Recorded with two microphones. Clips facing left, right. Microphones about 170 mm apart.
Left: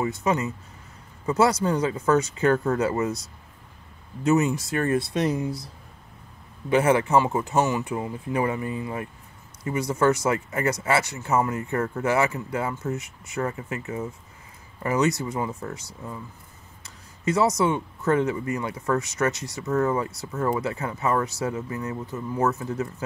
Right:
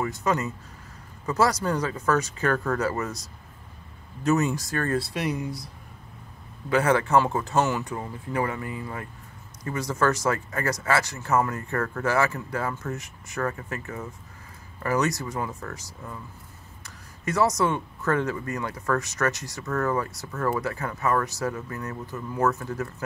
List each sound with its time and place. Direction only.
0.2 s speech: 20° left (ahead or behind)
4.2 s speech: 20° left (ahead or behind)
6.7 s speech: 20° left (ahead or behind)
7.2 s speech: 10° left (ahead or behind); by 16.2 s 25° left (ahead or behind)
16.8 s a sound: 25° left (ahead or behind)
17.6 s speech: 25° left (ahead or behind)